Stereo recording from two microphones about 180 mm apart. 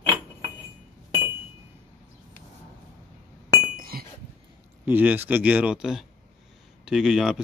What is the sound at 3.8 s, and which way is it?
Chink, 55° right (ahead or behind).